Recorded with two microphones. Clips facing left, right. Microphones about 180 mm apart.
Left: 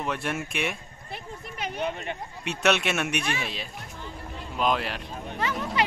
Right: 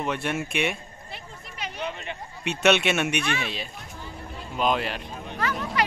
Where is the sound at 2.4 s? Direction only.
Centre (ahead or behind).